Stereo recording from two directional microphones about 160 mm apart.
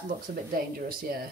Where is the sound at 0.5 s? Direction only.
65° right (ahead or behind).